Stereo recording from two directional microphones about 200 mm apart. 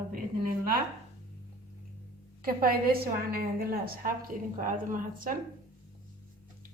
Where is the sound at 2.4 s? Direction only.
50° right (ahead or behind).